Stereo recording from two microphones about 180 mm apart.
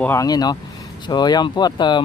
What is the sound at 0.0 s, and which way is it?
Speech, 15° left (ahead or behind).